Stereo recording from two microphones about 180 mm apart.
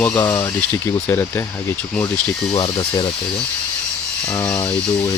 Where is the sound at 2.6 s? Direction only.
30° left (ahead or behind).